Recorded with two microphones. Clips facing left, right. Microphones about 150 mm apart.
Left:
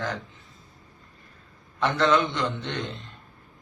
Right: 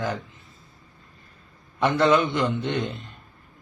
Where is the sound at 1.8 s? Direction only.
10° right (ahead or behind).